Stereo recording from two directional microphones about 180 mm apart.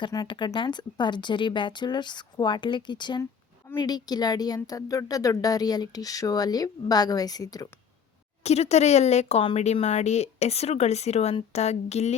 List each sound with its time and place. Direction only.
0.0 s a woman's voice: 25° left (ahead or behind)
8.4 s speech: 35° left (ahead or behind)